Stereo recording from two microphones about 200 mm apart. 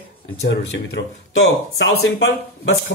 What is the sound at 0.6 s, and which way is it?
Speech, 60° left (ahead or behind).